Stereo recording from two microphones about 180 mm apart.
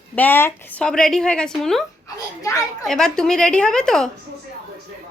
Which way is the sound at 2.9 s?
5° left (ahead or behind).